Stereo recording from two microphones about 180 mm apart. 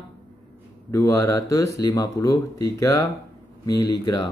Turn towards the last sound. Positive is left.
turn(degrees=25)  # may be behind; listen again after turning